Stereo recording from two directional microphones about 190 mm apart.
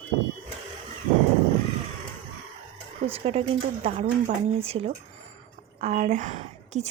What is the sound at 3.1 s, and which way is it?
Speech, 30° right (ahead or behind).